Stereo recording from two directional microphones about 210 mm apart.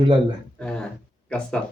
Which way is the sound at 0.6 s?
5° left (ahead or behind).